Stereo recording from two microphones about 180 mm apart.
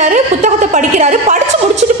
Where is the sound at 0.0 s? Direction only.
40° right (ahead or behind).